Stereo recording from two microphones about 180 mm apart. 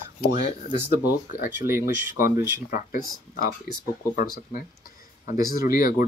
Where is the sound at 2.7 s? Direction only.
50° left (ahead or behind).